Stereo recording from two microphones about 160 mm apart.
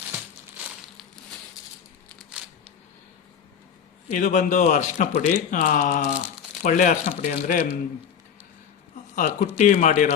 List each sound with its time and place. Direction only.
4.1 s a man's voice: 50° left (ahead or behind)
9.1 s speech: 50° left (ahead or behind)